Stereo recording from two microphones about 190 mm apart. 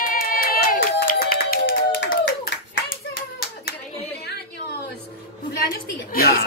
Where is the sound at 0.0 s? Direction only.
50° left (ahead or behind).